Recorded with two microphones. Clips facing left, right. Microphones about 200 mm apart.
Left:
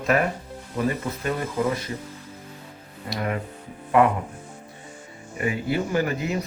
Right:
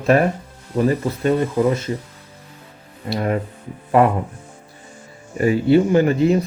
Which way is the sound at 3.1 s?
35° right (ahead or behind).